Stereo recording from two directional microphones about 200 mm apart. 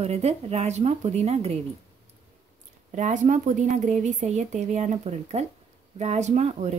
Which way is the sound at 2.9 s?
40° right (ahead or behind).